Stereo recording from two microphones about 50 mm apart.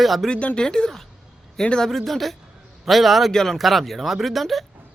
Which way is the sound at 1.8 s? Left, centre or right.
Centre.